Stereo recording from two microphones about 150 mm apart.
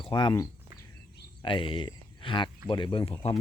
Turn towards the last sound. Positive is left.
turn(degrees=35)  # may be behind; listen again after turning